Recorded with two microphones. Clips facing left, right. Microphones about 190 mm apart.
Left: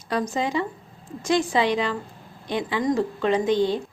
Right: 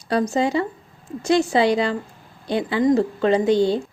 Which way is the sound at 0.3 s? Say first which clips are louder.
Right 5 dB; 35° right (ahead or behind).